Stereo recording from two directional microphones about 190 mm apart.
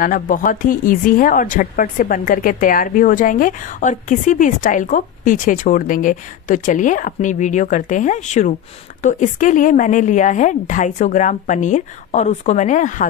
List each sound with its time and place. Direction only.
0.0 s a woman's voice: 45° left (ahead or behind)